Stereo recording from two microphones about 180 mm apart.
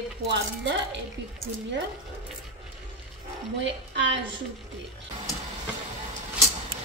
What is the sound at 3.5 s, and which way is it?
Speech, 85° right.